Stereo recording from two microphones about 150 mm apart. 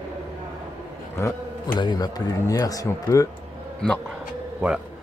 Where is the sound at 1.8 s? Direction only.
25° left (ahead or behind).